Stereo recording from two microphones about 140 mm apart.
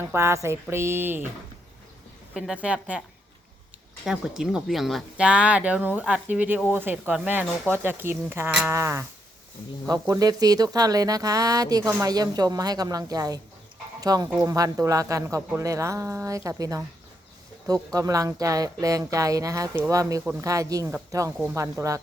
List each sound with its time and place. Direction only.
0.0 s speech: 15° right (ahead or behind)
2.3 s speech: 5° right (ahead or behind)
4.0 s speech: 5° right (ahead or behind); by 16.8 s 25° right (ahead or behind)
17.9 s speech: 25° right (ahead or behind)